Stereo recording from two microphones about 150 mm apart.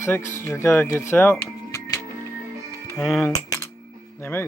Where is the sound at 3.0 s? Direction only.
Centre (ahead or behind).